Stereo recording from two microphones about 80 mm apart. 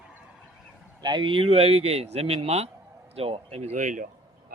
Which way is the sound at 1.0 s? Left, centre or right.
Right.